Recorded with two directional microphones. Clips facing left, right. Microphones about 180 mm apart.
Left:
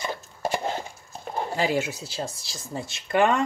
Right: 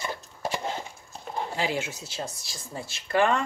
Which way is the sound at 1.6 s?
40° left (ahead or behind).